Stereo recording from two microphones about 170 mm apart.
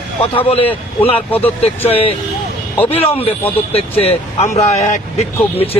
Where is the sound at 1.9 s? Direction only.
35° left (ahead or behind).